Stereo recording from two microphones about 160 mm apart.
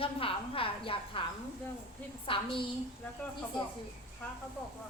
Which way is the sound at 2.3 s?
35° left (ahead or behind).